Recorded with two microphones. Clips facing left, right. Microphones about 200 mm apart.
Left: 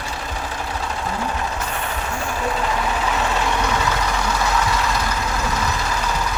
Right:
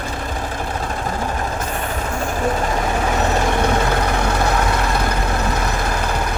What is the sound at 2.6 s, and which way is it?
Vehicle, 45° right (ahead or behind).